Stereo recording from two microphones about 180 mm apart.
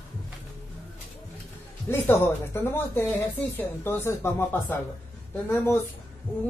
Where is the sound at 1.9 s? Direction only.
10° left (ahead or behind).